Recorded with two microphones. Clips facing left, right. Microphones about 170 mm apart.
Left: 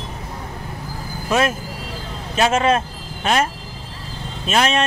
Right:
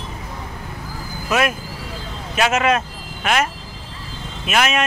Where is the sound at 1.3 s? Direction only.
30° left (ahead or behind).